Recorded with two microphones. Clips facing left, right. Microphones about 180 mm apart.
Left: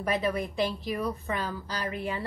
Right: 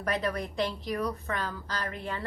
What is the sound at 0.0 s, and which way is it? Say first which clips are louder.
A woman's voice: left 2 dB; 5° left (ahead or behind).